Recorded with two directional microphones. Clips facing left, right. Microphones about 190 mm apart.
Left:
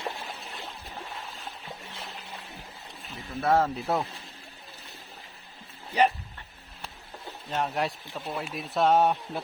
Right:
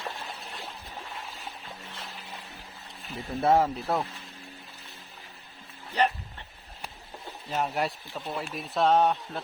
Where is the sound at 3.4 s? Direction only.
20° right (ahead or behind).